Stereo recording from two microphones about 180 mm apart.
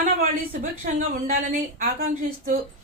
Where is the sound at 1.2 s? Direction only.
45° right (ahead or behind).